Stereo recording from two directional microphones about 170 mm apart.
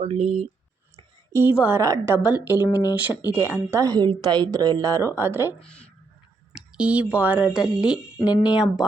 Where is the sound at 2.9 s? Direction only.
10° right (ahead or behind).